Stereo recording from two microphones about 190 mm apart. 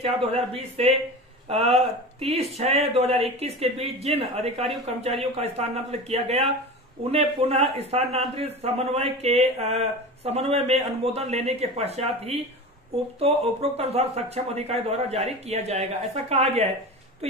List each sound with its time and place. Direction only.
0.0 s speech: 30° right (ahead or behind)